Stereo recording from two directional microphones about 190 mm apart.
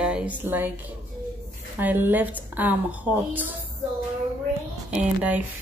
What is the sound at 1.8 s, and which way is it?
Speech, 10° right (ahead or behind).